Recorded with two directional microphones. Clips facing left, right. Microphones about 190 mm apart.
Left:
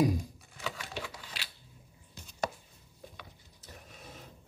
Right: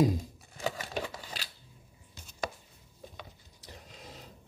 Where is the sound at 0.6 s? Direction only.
45° right (ahead or behind).